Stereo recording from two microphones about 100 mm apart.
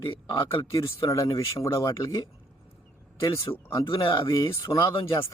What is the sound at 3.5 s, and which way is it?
Speech, 30° left (ahead or behind).